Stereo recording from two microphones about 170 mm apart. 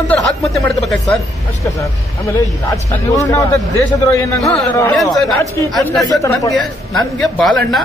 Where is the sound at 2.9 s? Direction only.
20° left (ahead or behind).